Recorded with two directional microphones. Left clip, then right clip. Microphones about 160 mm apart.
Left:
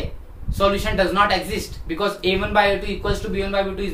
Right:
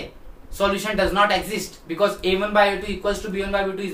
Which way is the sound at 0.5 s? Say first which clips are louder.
Left 2 dB; 10° left (ahead or behind).